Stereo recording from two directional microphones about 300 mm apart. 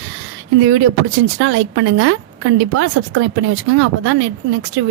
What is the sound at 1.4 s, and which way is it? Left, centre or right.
Speech, right.